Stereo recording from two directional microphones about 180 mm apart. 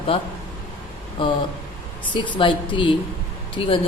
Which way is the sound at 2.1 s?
25° left (ahead or behind).